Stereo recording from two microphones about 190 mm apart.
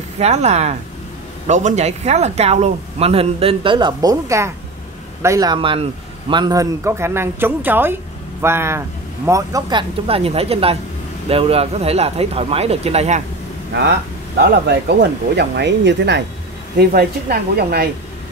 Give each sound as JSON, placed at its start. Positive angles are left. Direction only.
{"t": 0.2, "sound": "a man's voice", "side_deg": -35}
{"t": 14.4, "sound": "speech", "side_deg": -60}
{"t": 16.7, "sound": "speech", "side_deg": -55}